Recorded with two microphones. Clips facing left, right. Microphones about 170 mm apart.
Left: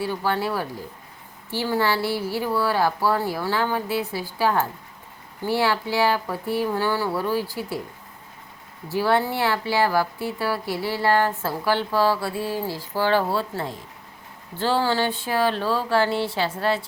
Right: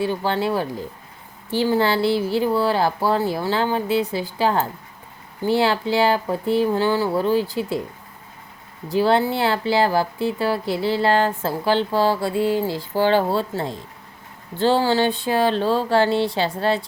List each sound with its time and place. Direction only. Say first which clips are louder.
0.0 s speech: right 3 dB; 20° right (ahead or behind)
9.0 s speech: right 3 dB; 25° right (ahead or behind)